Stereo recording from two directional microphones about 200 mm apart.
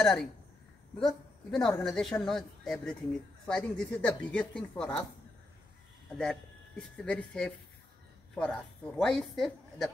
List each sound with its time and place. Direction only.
0.0 s speech: 5° left (ahead or behind)
6.1 s speech: 5° left (ahead or behind)